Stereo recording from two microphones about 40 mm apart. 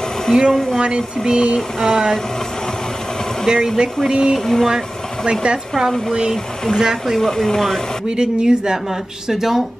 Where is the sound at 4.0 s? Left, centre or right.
Centre.